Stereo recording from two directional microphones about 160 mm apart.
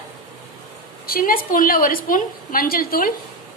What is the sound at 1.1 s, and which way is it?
A woman's voice, 60° left (ahead or behind).